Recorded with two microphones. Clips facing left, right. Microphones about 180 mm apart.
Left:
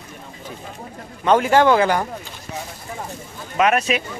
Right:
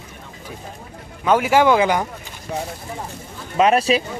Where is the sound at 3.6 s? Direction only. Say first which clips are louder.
Right 2 dB; 30° right (ahead or behind).